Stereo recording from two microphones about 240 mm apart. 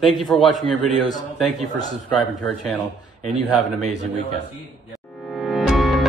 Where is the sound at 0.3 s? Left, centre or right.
Centre.